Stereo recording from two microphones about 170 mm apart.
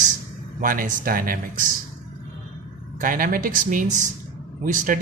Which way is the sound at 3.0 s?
55° right (ahead or behind).